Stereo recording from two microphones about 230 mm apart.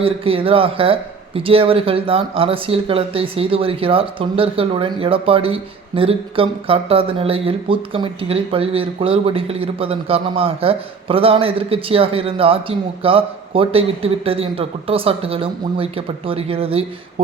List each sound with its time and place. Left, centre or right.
0.0 s speech: right